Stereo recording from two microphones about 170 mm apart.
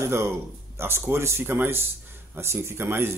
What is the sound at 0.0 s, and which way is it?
Speech, 15° right (ahead or behind).